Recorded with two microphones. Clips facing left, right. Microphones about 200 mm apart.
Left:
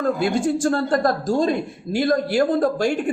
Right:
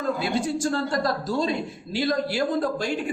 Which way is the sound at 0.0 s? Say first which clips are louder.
Left 5 dB; 50° left (ahead or behind).